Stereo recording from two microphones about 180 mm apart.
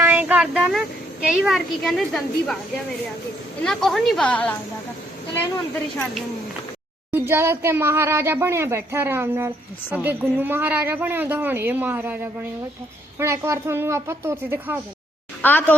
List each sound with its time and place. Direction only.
0.0 s a sound: 10° right (ahead or behind)
1.3 s a woman's voice: centre (ahead or behind)
3.6 s a woman's voice: centre (ahead or behind)
7.1 s speech: 15° right (ahead or behind)
15.4 s a woman's voice: 10° left (ahead or behind)